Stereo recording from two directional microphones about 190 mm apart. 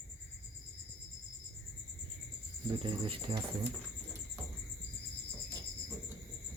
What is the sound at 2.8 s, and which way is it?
Speech, 30° right (ahead or behind).